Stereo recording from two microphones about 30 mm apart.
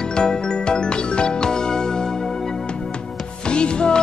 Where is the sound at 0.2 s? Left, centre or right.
Left.